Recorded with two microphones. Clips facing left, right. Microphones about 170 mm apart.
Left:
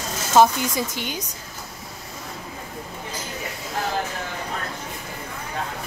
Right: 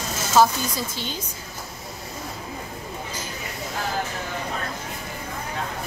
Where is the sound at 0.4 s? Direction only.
15° left (ahead or behind).